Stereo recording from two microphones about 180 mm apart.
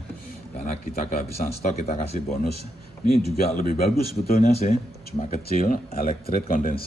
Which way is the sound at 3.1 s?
60° left (ahead or behind).